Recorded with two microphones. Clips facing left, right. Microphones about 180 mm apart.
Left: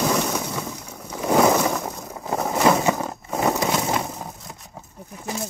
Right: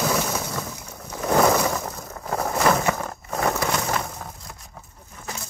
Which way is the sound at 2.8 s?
20° left (ahead or behind).